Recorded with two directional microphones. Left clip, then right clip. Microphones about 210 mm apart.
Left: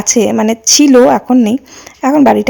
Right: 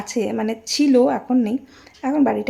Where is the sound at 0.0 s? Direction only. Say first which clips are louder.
Left 12 dB; 40° left (ahead or behind).